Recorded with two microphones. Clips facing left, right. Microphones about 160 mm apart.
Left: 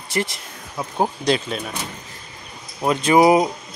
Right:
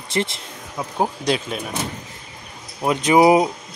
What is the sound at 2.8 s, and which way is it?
Speech, 15° right (ahead or behind).